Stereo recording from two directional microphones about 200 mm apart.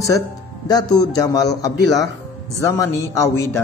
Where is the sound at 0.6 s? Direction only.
20° left (ahead or behind).